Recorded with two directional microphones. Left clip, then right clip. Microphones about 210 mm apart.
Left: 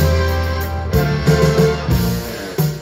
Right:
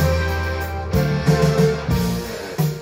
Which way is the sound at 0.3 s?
25° left (ahead or behind).